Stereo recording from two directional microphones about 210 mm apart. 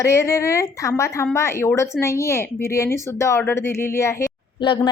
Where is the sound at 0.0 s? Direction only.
15° left (ahead or behind).